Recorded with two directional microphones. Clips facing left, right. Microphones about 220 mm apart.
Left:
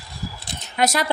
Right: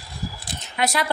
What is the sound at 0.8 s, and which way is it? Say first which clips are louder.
Speech: left 3 dB; 40° left (ahead or behind).